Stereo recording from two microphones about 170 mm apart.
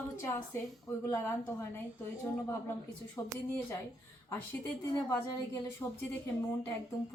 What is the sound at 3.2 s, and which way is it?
Speech, 15° left (ahead or behind).